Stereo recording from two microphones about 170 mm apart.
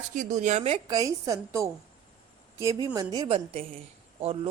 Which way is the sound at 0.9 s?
20° right (ahead or behind).